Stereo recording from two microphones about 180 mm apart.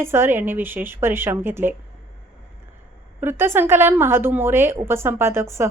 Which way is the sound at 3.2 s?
10° right (ahead or behind).